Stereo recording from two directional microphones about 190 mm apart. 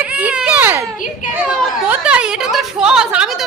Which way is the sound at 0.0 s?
5° right (ahead or behind).